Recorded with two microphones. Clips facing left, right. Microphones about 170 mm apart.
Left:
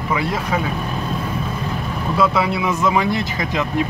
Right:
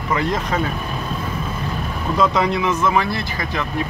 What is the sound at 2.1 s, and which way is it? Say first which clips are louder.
Speech: even; 5° left (ahead or behind).